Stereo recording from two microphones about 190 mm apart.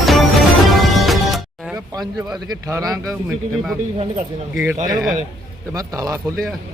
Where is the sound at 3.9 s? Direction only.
35° right (ahead or behind).